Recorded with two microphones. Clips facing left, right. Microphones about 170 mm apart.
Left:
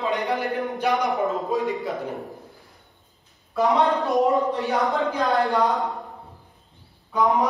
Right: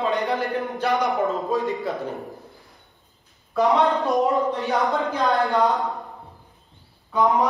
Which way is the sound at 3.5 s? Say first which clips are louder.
Right 1 dB; centre (ahead or behind).